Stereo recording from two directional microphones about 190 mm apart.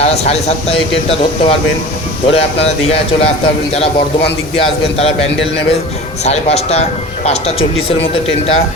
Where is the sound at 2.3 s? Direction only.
30° left (ahead or behind).